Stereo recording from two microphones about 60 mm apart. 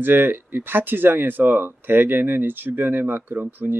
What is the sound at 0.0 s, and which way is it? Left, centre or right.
Speech, right.